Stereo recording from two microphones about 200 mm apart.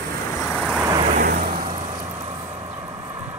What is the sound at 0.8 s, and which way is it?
Vehicle, 15° right (ahead or behind).